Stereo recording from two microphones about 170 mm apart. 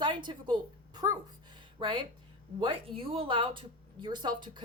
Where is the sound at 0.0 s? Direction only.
25° right (ahead or behind).